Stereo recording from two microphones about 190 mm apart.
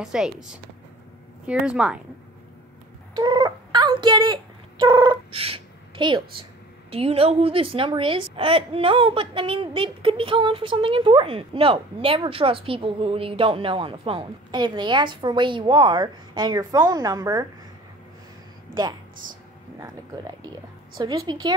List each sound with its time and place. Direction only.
0.0 s a woman's voice: 5° right (ahead or behind)
3.2 s a sound: 25° right (ahead or behind)
6.9 s a woman's voice: 30° right (ahead or behind)
19.8 s a woman's voice: 20° right (ahead or behind)